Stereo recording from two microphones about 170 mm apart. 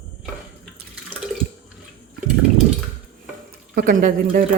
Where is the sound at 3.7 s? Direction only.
55° right (ahead or behind).